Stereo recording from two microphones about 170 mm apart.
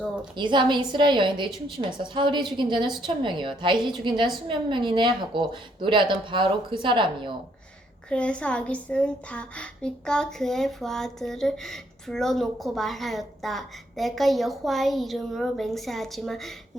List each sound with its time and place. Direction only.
0.3 s a woman's voice: 25° right (ahead or behind)
8.1 s a woman's voice: 5° left (ahead or behind)